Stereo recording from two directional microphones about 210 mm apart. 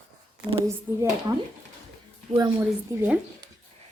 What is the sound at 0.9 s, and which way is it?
Speech, 15° right (ahead or behind).